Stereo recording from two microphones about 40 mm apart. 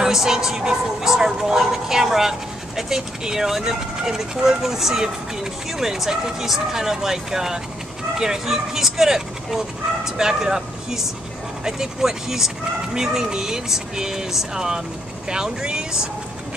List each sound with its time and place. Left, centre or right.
0.0 s speech: centre